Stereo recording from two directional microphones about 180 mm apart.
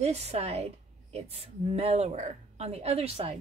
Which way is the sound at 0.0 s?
35° right (ahead or behind).